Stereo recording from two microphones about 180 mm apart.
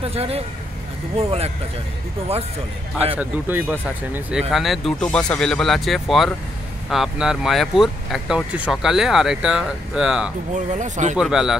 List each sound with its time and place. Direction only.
0.0 s speech: 35° right (ahead or behind)
3.2 s speech: 10° right (ahead or behind)
10.5 s speech: 40° right (ahead or behind)
11.1 s speech: 5° right (ahead or behind)